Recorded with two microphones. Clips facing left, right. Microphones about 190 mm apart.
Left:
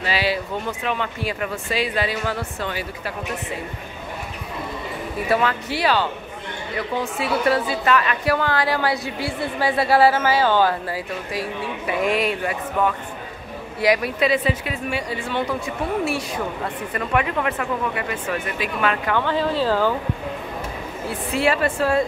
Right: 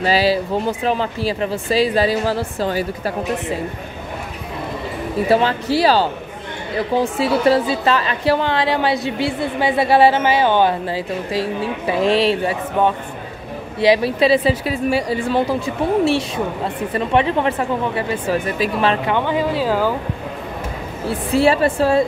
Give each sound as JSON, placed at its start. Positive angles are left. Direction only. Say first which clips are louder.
{"t": 0.0, "sound": "speech", "louder": "right 7 dB", "side_deg": -35}
{"t": 5.3, "sound": "speech", "louder": "right 5 dB", "side_deg": -30}
{"t": 21.4, "sound": "speech", "louder": "right 5 dB", "side_deg": -30}